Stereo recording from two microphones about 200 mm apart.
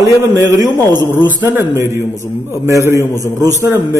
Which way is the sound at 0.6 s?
20° right (ahead or behind).